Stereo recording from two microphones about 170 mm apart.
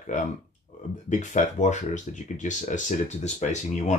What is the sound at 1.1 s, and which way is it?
Speech, 45° left (ahead or behind).